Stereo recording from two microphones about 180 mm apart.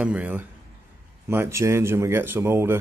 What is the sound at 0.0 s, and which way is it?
Speech, 10° right (ahead or behind).